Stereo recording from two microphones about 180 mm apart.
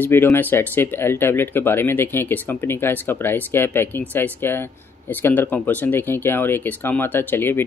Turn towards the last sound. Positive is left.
turn(degrees=10)  # may be behind; listen again after turning